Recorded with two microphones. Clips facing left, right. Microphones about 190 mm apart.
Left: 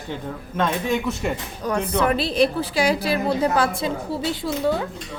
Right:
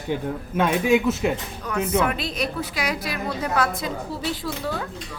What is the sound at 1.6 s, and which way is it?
A woman's voice, 35° left (ahead or behind).